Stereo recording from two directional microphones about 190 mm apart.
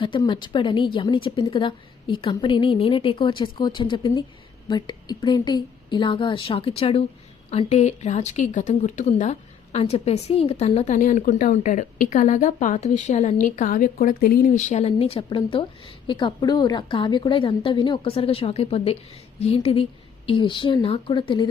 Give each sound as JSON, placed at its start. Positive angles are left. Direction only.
{"t": 0.0, "sound": "a woman's voice", "side_deg": 25}